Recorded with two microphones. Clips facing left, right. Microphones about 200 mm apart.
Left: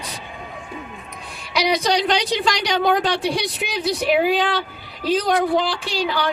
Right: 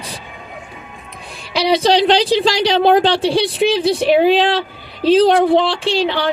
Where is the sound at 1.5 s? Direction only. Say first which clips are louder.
Right 6 dB; 30° right (ahead or behind).